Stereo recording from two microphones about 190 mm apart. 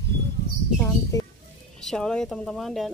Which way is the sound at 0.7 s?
15° left (ahead or behind).